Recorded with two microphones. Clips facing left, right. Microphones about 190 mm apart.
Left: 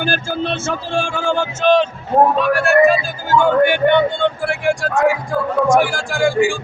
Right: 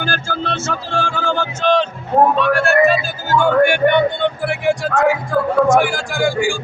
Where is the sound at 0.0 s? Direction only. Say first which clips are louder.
Left 3 dB; 15° left (ahead or behind).